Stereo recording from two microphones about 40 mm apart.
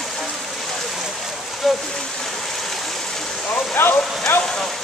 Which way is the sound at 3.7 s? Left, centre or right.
Left.